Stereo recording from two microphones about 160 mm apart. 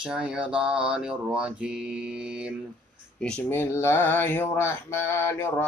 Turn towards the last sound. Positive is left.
turn(degrees=15)  # may be behind; listen again after turning